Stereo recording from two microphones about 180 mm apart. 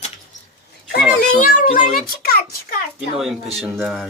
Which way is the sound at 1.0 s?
5° right (ahead or behind).